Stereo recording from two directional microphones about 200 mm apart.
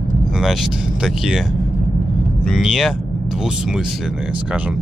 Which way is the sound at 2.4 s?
Centre (ahead or behind).